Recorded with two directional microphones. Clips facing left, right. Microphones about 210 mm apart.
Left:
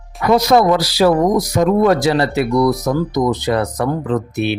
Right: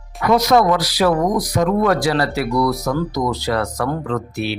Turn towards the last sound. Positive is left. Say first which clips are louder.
# left 4 dB
turn(degrees=20)  # may be behind; listen again after turning